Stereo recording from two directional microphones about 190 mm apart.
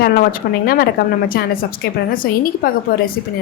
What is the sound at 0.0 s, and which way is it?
A woman's voice, 50° left (ahead or behind).